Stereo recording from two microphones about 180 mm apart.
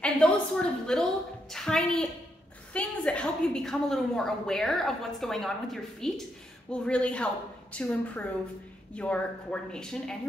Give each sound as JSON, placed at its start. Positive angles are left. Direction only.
{"t": 0.0, "sound": "a woman's voice", "side_deg": 5}